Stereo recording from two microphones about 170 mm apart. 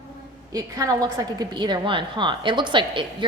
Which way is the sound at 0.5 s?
20° right (ahead or behind).